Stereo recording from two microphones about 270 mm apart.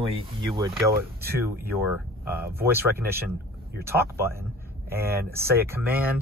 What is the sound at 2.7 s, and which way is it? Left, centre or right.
Speech, centre.